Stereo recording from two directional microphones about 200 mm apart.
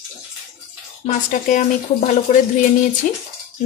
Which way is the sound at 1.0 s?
40° left (ahead or behind).